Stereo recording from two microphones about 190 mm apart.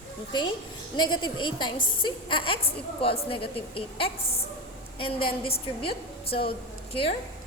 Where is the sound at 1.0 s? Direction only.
25° left (ahead or behind).